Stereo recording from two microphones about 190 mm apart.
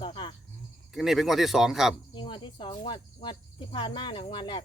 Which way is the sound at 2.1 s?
25° left (ahead or behind).